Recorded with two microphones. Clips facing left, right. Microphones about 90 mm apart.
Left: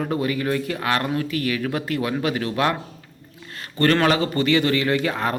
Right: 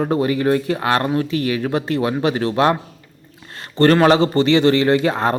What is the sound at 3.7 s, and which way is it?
Speech, 30° right (ahead or behind).